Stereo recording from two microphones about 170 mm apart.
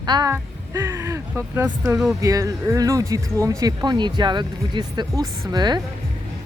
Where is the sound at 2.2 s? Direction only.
20° right (ahead or behind).